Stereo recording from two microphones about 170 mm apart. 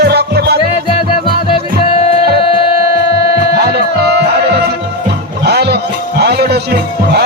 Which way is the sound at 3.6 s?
75° right (ahead or behind).